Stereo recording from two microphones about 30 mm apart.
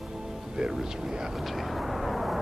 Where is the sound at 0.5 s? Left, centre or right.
Right.